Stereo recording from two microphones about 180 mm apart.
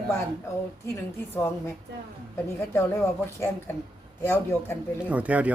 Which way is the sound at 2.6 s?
15° left (ahead or behind).